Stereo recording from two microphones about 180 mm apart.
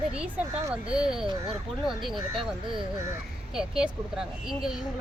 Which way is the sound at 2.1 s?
25° right (ahead or behind).